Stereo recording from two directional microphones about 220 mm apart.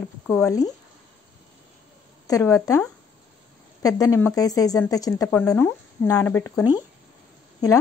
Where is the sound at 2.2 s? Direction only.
15° left (ahead or behind).